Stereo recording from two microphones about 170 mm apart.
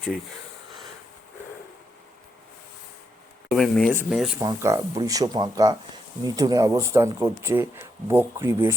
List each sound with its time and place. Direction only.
3.5 s speech: centre (ahead or behind)
4.4 s speech: 15° right (ahead or behind)